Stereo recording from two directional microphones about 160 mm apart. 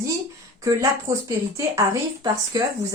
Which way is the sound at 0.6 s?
20° right (ahead or behind).